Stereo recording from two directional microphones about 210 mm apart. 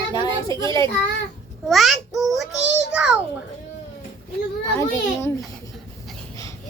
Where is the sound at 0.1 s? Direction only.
15° left (ahead or behind).